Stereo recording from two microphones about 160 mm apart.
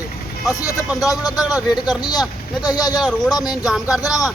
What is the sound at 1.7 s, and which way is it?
Speech, 25° left (ahead or behind).